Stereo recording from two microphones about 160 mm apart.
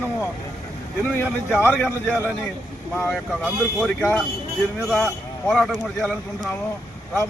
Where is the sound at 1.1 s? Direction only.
15° left (ahead or behind).